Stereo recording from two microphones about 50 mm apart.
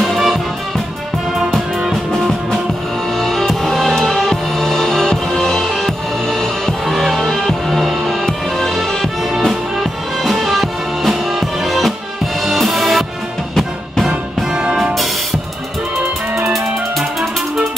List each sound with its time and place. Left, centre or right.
0.0 s music: centre
3.2 s music: centre
14.0 s music: centre